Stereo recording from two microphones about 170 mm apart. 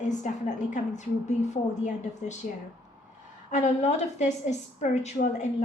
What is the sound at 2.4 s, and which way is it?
A woman's voice, 45° left (ahead or behind).